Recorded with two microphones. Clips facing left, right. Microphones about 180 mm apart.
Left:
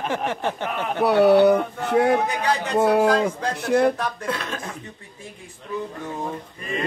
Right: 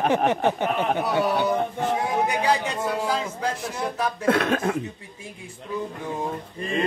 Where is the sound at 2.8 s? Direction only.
70° left (ahead or behind).